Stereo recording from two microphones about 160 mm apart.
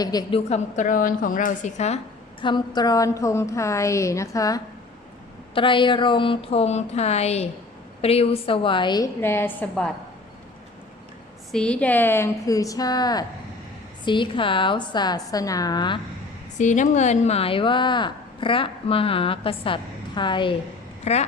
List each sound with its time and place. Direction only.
0.0 s a woman's voice: 25° left (ahead or behind)
0.3 s a woman's voice: 45° left (ahead or behind)
2.4 s a woman's voice: 30° left (ahead or behind)
5.5 s speech: 30° left (ahead or behind)
9.2 s a woman's voice: 15° left (ahead or behind)
11.5 s a woman's voice: 5° left (ahead or behind); by 16.0 s 25° left (ahead or behind)
16.6 s speech: 50° left (ahead or behind); by 20.6 s 30° left (ahead or behind)
21.0 s speech: 45° left (ahead or behind)